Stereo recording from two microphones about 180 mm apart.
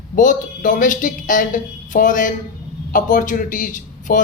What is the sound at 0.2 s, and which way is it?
A man's voice, 45° left (ahead or behind).